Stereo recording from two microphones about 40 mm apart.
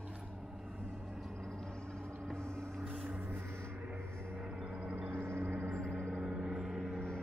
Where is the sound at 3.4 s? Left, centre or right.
Right.